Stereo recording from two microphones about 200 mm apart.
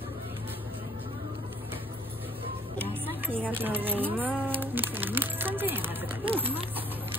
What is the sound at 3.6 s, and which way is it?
Speech, 10° right (ahead or behind).